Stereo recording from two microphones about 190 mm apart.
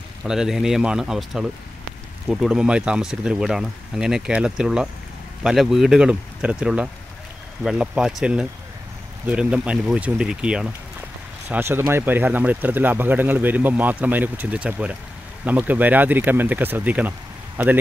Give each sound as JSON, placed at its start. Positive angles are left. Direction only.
{"t": 0.2, "sound": "speech", "side_deg": -5}